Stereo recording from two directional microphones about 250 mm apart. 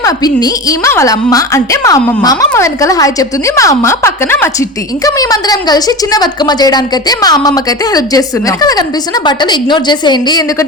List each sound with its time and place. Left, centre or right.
0.0 s a woman's voice: centre